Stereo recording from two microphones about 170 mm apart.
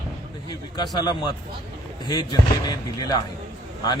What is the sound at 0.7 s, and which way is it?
Speech, 25° left (ahead or behind).